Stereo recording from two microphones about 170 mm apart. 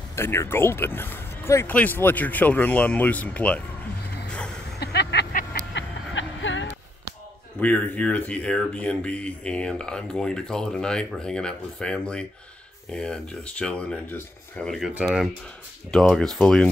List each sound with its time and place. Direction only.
0.1 s speech: 15° left (ahead or behind)
4.7 s vehicle: 75° left (ahead or behind)
5.3 s music: 75° left (ahead or behind)
7.6 s speech: 10° left (ahead or behind)